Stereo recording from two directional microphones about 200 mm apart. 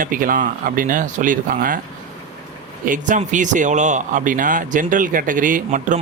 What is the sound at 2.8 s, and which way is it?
Speech, 40° right (ahead or behind).